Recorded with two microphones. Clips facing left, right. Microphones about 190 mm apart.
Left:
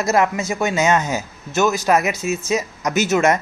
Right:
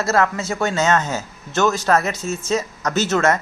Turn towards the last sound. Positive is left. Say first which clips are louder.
# left 1 dB
turn(degrees=10)  # may be behind; listen again after turning